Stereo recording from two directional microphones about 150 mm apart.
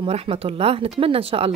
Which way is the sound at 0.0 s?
40° right (ahead or behind).